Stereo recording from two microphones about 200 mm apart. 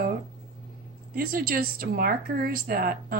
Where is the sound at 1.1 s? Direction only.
45° right (ahead or behind).